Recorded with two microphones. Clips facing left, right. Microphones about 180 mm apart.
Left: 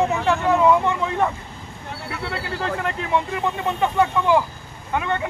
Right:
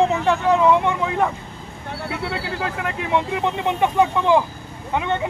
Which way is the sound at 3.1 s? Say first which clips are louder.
Right 3 dB; 20° right (ahead or behind).